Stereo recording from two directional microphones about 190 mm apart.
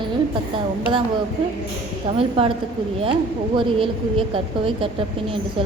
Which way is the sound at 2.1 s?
30° right (ahead or behind).